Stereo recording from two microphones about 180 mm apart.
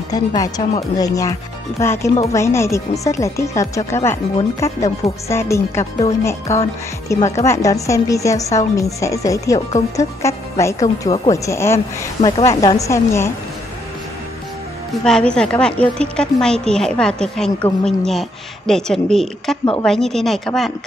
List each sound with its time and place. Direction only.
0.1 s a woman's voice: 20° left (ahead or behind)
15.0 s a woman's voice: 5° left (ahead or behind)